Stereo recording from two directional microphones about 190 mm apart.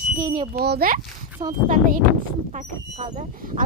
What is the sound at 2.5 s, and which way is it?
Speech, 40° right (ahead or behind).